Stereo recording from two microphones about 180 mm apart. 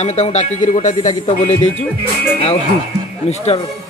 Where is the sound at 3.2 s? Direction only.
35° left (ahead or behind).